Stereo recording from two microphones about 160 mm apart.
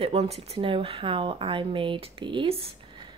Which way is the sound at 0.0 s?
40° right (ahead or behind).